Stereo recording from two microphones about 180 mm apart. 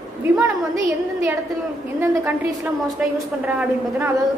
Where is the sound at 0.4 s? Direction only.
10° right (ahead or behind).